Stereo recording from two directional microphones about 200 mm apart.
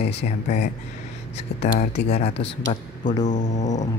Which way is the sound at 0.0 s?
30° left (ahead or behind).